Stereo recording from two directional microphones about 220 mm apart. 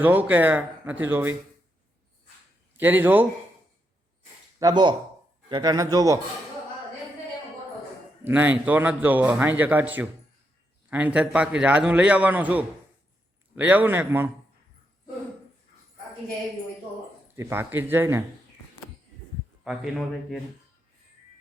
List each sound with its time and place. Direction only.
0.0 s a man's voice: 10° right (ahead or behind)
2.7 s a man's voice: 10° right (ahead or behind)
4.6 s a man's voice: 20° right (ahead or behind)
8.2 s a man's voice: 10° right (ahead or behind)
17.3 s a man's voice: 10° right (ahead or behind)
19.6 s a man's voice: centre (ahead or behind)